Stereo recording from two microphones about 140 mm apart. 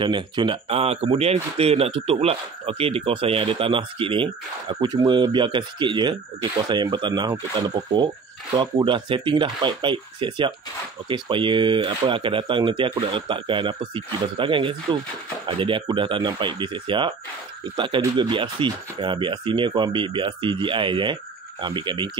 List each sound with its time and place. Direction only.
0.0 s speech: 35° right (ahead or behind)